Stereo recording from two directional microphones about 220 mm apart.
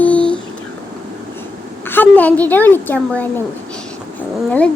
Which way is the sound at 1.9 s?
10° left (ahead or behind).